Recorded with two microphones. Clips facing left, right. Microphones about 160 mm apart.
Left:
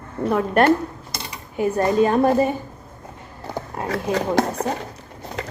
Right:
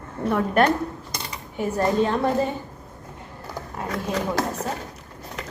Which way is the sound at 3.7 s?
70° left (ahead or behind).